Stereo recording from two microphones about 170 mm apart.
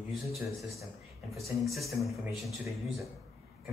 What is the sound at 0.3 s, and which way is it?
Speech, centre (ahead or behind).